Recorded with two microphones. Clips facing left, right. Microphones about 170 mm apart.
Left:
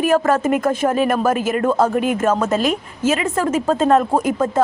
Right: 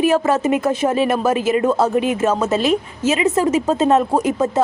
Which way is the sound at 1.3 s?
50° left (ahead or behind).